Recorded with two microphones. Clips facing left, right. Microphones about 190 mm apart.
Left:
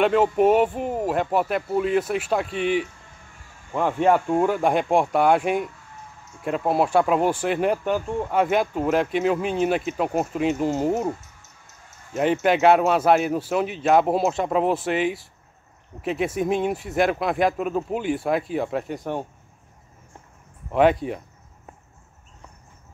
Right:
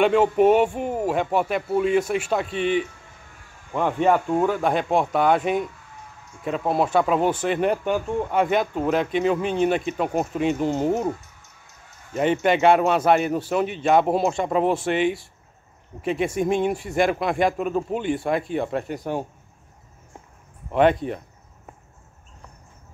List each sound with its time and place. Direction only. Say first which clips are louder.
0.0 s speech: right 1 dB; centre (ahead or behind)
20.7 s speech: even; 5° left (ahead or behind)